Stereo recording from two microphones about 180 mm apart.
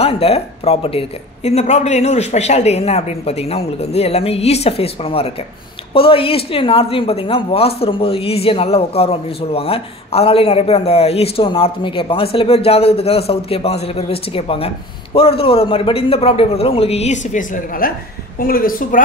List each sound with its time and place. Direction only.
0.0 s a woman's voice: 35° left (ahead or behind); by 18.9 s 50° left (ahead or behind)